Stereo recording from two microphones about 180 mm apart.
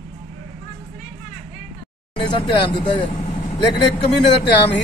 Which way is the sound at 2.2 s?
25° left (ahead or behind).